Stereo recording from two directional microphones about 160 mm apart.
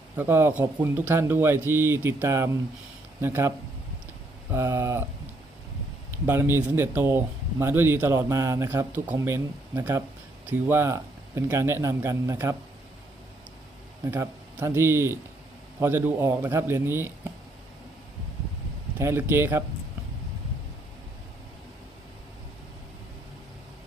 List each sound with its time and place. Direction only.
0.2 s a man's voice: 15° right (ahead or behind)
4.5 s a man's voice: 15° right (ahead or behind)
6.2 s a man's voice: 15° right (ahead or behind)
14.0 s a man's voice: 15° right (ahead or behind)
18.9 s a man's voice: 15° right (ahead or behind)